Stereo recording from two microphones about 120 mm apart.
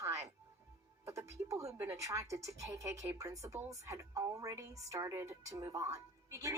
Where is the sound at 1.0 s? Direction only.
25° right (ahead or behind).